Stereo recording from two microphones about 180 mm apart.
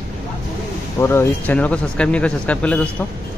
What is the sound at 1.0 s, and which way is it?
Speech, 15° left (ahead or behind).